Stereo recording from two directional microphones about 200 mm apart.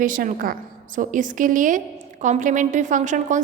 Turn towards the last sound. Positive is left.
turn(degrees=-40)  # may be behind; listen again after turning